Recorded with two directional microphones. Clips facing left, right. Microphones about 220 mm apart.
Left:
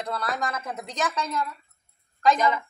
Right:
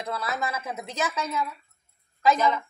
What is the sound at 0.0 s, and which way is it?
A woman's voice, 5° right (ahead or behind).